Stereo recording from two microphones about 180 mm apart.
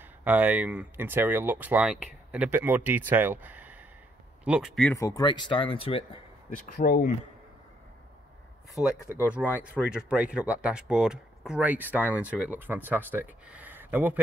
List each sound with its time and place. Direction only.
0.0 s speech: 10° right (ahead or behind)
4.9 s speech: 20° left (ahead or behind)
6.5 s speech: 50° left (ahead or behind)
9.0 s speech: 10° right (ahead or behind)